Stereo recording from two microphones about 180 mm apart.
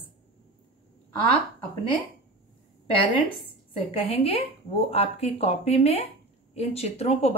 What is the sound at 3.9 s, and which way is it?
Speech, 35° left (ahead or behind).